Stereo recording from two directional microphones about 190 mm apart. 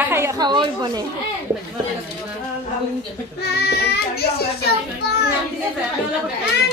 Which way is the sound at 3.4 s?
60° left (ahead or behind).